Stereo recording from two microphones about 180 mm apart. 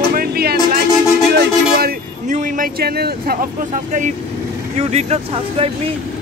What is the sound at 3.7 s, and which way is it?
Speech, 45° right (ahead or behind).